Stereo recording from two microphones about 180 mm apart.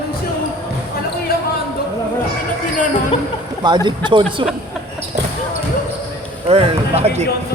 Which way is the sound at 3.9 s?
25° right (ahead or behind).